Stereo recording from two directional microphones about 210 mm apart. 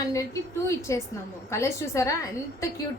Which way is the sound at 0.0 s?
15° left (ahead or behind).